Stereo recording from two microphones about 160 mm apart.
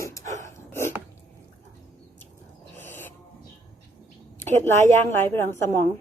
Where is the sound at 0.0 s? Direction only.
20° left (ahead or behind).